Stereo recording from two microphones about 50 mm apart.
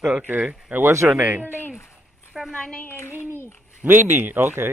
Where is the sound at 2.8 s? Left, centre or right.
Left.